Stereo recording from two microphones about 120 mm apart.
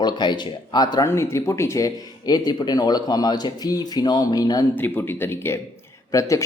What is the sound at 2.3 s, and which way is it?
Speech, 35° left (ahead or behind).